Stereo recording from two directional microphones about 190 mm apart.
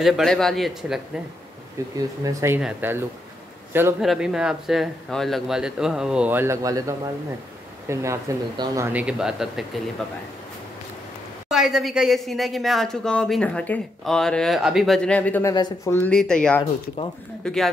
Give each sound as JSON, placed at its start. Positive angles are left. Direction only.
{"t": 0.0, "sound": "a woman's voice", "side_deg": 0}
{"t": 1.8, "sound": "speech", "side_deg": -15}
{"t": 4.0, "sound": "a woman's voice", "side_deg": 0}
{"t": 11.5, "sound": "a woman's voice", "side_deg": 0}
{"t": 15.5, "sound": "a woman's voice", "side_deg": 20}